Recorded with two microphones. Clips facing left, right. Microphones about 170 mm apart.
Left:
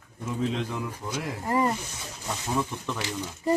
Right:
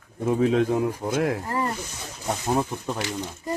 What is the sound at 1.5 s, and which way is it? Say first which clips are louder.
Speech: left 2 dB; 20° left (ahead or behind).